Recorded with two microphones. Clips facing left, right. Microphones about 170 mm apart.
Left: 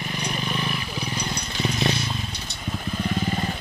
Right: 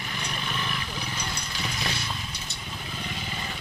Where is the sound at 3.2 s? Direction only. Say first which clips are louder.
Left 10 dB; 45° left (ahead or behind).